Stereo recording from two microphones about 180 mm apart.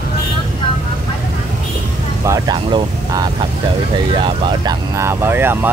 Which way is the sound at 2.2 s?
20° right (ahead or behind).